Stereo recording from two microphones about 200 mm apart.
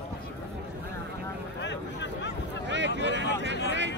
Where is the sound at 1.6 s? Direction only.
60° left (ahead or behind).